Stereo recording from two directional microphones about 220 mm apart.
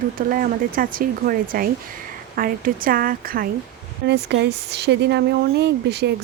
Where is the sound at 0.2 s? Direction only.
40° right (ahead or behind).